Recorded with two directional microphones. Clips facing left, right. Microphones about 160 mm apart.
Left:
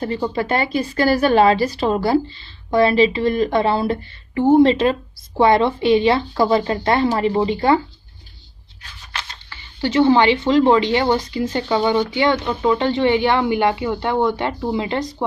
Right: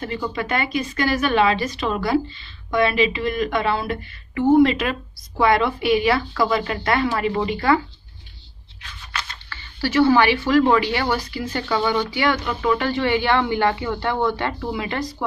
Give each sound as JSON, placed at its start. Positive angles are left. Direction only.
{"t": 0.0, "sound": "speech", "side_deg": 35}
{"t": 9.5, "sound": "speech", "side_deg": 20}